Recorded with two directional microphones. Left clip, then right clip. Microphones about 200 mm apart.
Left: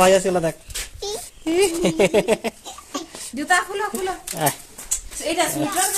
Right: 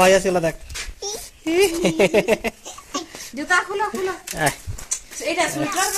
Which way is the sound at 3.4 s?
50° left (ahead or behind).